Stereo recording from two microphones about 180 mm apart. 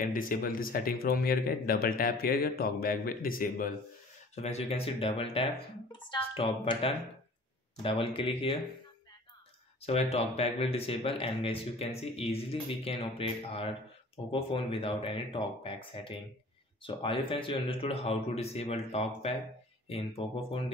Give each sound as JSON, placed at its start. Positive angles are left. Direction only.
{"t": 0.0, "sound": "speech", "side_deg": 50}
{"t": 4.4, "sound": "speech", "side_deg": 35}
{"t": 9.8, "sound": "speech", "side_deg": 35}